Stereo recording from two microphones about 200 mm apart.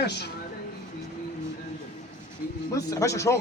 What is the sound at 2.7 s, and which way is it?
Speech, 15° left (ahead or behind).